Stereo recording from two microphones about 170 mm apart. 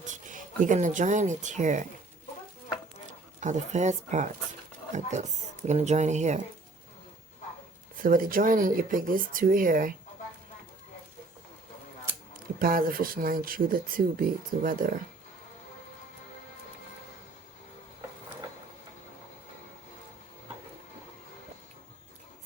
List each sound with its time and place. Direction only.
0.1 s speech: 50° right (ahead or behind)
3.1 s speech: 45° right (ahead or behind)
8.0 s speech: 55° right (ahead or behind)
12.5 s speech: 60° right (ahead or behind)